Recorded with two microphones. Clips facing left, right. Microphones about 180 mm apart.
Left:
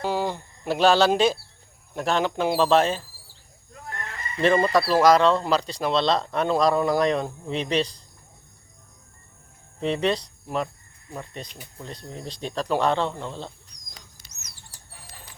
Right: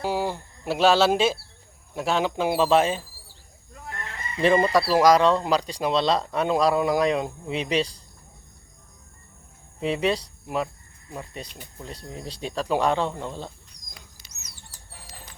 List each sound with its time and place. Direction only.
0.0 s speech: 10° right (ahead or behind)
4.4 s speech: 10° right (ahead or behind)
9.8 s speech: 10° right (ahead or behind)
14.2 s bird flight: 50° left (ahead or behind)